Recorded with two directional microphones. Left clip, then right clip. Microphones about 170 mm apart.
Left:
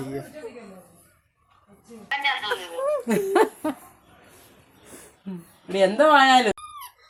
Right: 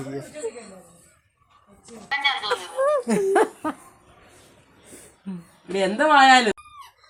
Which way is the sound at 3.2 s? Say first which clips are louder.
Left 1 dB; 15° left (ahead or behind).